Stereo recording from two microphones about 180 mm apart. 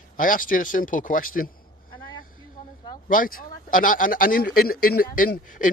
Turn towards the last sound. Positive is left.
turn(degrees=50)  # may be behind; listen again after turning